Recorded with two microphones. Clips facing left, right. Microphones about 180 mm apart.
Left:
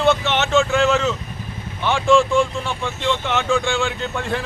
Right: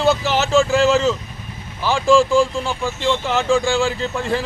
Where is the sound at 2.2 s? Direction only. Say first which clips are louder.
Right 2 dB; 30° right (ahead or behind).